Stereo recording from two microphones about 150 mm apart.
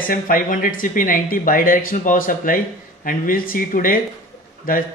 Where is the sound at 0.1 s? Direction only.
65° left (ahead or behind).